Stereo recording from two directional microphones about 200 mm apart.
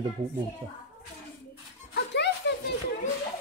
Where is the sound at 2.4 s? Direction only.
60° left (ahead or behind).